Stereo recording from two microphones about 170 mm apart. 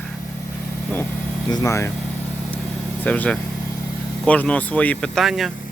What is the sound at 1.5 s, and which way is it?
Speech, 20° left (ahead or behind).